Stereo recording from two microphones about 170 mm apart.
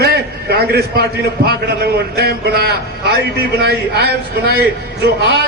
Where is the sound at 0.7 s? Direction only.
65° right (ahead or behind).